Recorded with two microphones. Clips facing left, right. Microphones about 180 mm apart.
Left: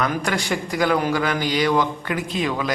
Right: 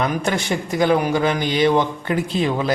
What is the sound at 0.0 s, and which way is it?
Speech, 25° right (ahead or behind).